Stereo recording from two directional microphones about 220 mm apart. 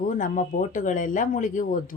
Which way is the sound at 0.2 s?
35° left (ahead or behind).